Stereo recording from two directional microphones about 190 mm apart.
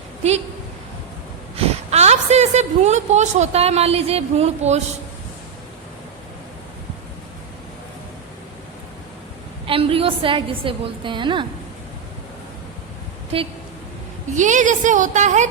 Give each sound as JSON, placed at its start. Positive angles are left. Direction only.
{"t": 0.2, "sound": "a woman's voice", "side_deg": -35}
{"t": 1.5, "sound": "a woman's voice", "side_deg": -35}
{"t": 9.6, "sound": "a woman's voice", "side_deg": -30}
{"t": 13.3, "sound": "a woman's voice", "side_deg": -30}
{"t": 14.3, "sound": "a woman's voice", "side_deg": -40}